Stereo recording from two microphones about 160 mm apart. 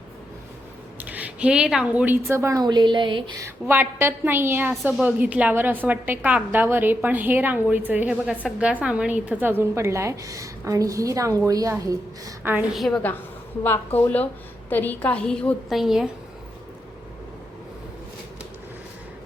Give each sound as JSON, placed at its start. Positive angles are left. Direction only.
{"t": 0.9, "sound": "a woman's voice", "side_deg": -10}
{"t": 3.4, "sound": "a woman's voice", "side_deg": -15}
{"t": 12.7, "sound": "a woman's voice", "side_deg": 0}
{"t": 13.7, "sound": "a woman's voice", "side_deg": 10}